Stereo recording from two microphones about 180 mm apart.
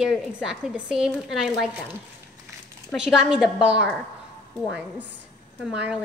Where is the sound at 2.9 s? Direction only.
5° right (ahead or behind).